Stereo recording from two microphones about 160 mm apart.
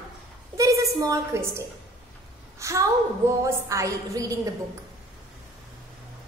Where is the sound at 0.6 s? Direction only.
20° right (ahead or behind).